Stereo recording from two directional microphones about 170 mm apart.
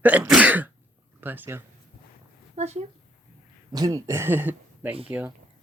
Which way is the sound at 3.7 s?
20° right (ahead or behind).